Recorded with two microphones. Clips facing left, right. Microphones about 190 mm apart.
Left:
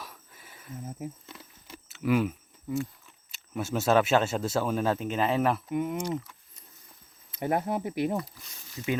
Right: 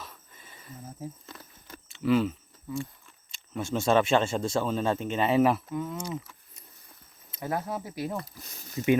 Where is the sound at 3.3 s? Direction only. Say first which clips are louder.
Even; 5° left (ahead or behind).